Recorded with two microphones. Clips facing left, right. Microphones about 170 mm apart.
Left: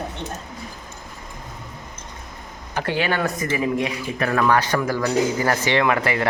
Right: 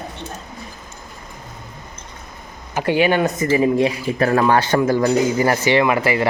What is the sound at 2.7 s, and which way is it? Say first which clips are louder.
Speech: right 6 dB; 15° right (ahead or behind).